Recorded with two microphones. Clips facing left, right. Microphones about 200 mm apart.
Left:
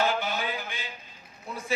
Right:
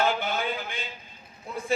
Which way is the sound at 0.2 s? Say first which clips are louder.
Right 2 dB; 55° right (ahead or behind).